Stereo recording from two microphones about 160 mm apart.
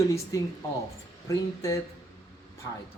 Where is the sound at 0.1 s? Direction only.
20° left (ahead or behind).